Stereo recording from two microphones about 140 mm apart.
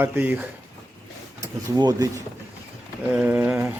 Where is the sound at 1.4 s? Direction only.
25° right (ahead or behind).